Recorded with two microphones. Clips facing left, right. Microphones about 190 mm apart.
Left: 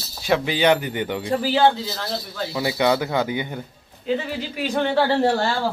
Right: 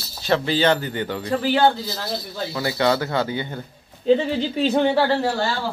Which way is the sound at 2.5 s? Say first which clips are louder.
Left 1 dB; 15° left (ahead or behind).